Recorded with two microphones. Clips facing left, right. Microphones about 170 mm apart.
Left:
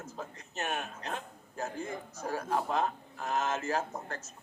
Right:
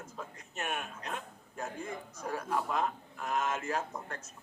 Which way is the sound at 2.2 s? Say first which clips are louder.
Left 2 dB; 40° left (ahead or behind).